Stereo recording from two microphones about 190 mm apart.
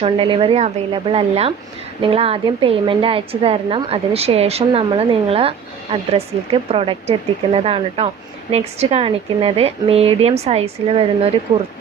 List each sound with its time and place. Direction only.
0.0 s a woman's voice: 30° right (ahead or behind)